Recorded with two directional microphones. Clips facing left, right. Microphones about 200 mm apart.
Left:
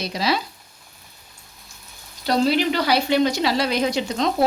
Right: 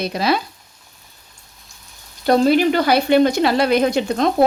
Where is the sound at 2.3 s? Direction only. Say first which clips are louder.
Right 5 dB; 50° right (ahead or behind).